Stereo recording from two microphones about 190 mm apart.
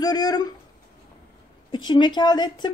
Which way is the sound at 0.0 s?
20° left (ahead or behind).